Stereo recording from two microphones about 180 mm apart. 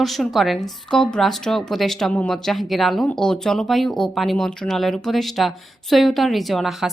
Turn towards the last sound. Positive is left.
turn(degrees=0)  # may be behind; listen again after turning